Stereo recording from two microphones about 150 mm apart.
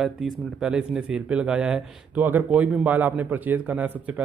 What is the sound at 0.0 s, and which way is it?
Speech, 5° right (ahead or behind).